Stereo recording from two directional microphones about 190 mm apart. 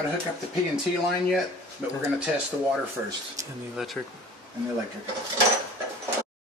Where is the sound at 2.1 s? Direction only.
5° right (ahead or behind).